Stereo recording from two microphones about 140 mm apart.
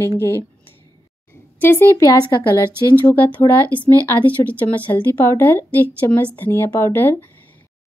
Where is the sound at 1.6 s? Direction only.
15° left (ahead or behind).